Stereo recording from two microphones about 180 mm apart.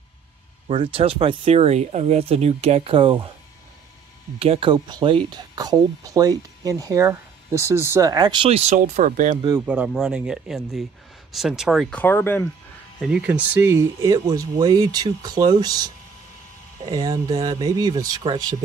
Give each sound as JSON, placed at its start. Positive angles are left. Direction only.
{"t": 0.7, "sound": "speech", "side_deg": -30}
{"t": 4.4, "sound": "speech", "side_deg": -30}
{"t": 9.7, "sound": "speech", "side_deg": -5}
{"t": 12.0, "sound": "speech", "side_deg": 10}
{"t": 13.0, "sound": "speech", "side_deg": -5}